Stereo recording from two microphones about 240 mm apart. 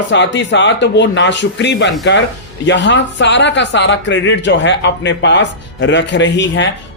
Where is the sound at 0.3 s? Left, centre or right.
Left.